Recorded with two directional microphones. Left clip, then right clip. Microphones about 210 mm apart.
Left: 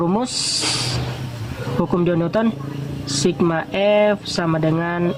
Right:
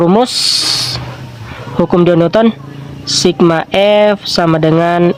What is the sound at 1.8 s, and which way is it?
Speech, 40° right (ahead or behind).